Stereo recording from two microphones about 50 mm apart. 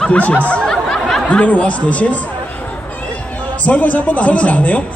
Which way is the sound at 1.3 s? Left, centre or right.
Left.